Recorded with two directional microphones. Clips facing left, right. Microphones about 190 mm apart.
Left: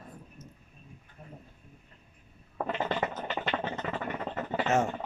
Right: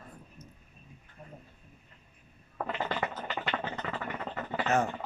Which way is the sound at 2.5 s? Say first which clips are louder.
Left 2 dB; 25° left (ahead or behind).